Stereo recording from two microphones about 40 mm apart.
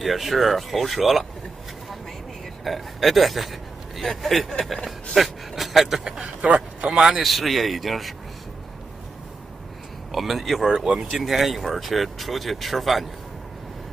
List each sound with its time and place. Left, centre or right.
0.0 s speech: centre
2.6 s a man's voice: centre
6.2 s a sound: right
7.0 s a man's voice: centre
7.2 s speech: centre
10.1 s speech: centre
10.7 s speech: centre